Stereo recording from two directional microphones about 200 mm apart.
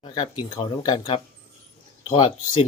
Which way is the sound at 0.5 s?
25° left (ahead or behind).